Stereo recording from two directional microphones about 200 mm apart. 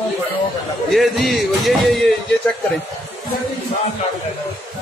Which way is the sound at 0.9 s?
Centre (ahead or behind).